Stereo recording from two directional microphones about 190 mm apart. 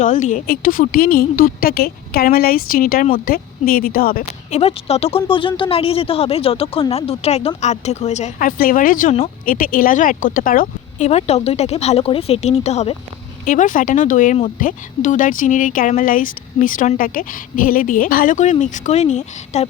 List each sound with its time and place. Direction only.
0.0 s speech: 40° left (ahead or behind)
4.5 s speech: 35° left (ahead or behind)